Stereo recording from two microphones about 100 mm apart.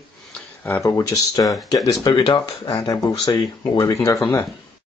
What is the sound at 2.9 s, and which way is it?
Speech, 35° left (ahead or behind).